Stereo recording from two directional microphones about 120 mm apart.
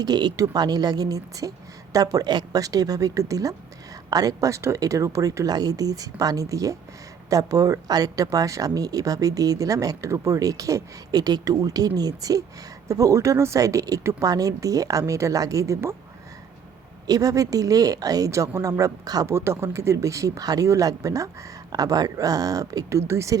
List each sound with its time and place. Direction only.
0.0 s speech: 35° right (ahead or behind)
17.1 s speech: 30° right (ahead or behind)